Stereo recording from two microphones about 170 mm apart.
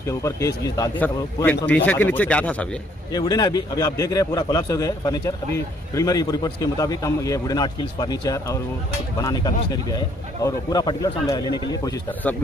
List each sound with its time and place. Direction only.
0.0 s speech: 15° left (ahead or behind)
3.1 s a man's voice: 25° left (ahead or behind)